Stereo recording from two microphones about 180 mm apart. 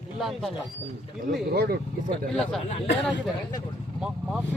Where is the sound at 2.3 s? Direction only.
Centre (ahead or behind).